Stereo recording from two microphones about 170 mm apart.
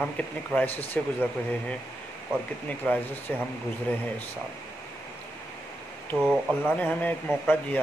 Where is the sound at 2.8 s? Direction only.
10° left (ahead or behind).